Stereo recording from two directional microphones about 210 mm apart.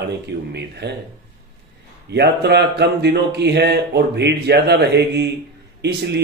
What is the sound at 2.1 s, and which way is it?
Speech, 55° right (ahead or behind).